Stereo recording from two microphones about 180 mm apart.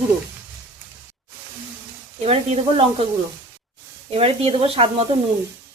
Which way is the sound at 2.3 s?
30° right (ahead or behind).